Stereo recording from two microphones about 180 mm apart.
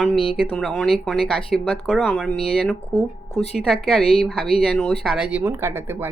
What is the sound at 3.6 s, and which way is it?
Speech, 5° left (ahead or behind).